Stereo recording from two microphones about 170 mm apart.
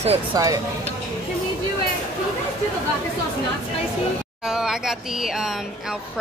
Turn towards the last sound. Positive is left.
turn(degrees=-5)  # may be behind; listen again after turning